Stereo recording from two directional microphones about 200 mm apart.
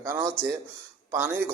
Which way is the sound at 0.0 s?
15° right (ahead or behind).